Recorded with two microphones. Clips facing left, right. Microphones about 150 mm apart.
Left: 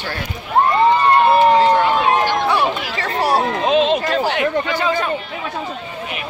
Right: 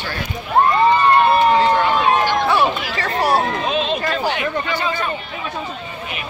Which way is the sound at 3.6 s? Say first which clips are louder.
Left 5 dB; 90° left.